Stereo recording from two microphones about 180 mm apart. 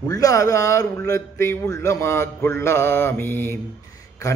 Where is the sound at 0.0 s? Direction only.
20° left (ahead or behind).